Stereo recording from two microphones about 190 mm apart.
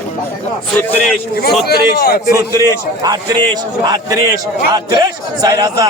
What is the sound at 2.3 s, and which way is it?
Speech, 15° right (ahead or behind).